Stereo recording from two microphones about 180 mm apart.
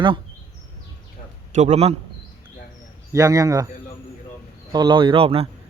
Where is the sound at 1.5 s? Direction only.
40° right (ahead or behind).